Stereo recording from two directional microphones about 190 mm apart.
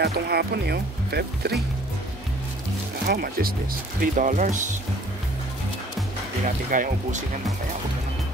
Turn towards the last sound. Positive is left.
turn(degrees=-45)  # may be behind; listen again after turning